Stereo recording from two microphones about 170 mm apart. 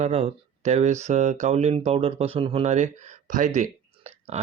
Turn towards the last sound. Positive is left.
turn(degrees=-45)  # may be behind; listen again after turning